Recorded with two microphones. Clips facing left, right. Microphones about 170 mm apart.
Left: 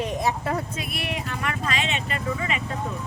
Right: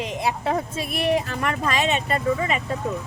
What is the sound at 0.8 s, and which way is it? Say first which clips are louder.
Speech: right 8 dB; 35° right (ahead or behind).